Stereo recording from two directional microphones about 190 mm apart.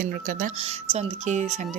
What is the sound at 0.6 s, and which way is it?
Speech, 30° right (ahead or behind).